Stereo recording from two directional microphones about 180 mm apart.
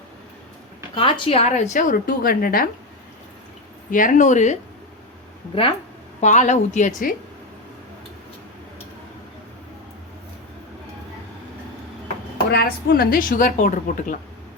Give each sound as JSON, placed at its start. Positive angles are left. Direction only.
{"t": 0.9, "sound": "a woman's voice", "side_deg": 25}
{"t": 3.9, "sound": "a woman's voice", "side_deg": 45}
{"t": 6.1, "sound": "a woman's voice", "side_deg": 40}
{"t": 12.5, "sound": "a woman's voice", "side_deg": 60}